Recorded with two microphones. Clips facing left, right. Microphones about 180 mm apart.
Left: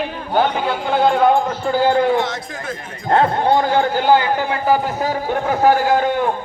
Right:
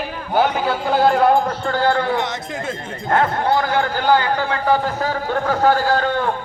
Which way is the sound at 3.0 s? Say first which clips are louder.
Left 3 dB; 25° left (ahead or behind).